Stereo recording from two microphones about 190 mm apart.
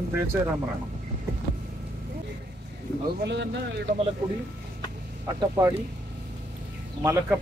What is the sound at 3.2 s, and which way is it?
Speech, 65° right (ahead or behind).